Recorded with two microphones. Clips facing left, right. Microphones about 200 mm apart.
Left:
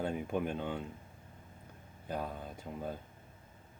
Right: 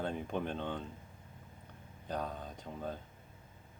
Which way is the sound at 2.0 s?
10° left (ahead or behind).